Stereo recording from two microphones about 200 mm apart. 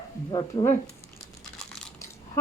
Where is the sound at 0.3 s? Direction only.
20° left (ahead or behind).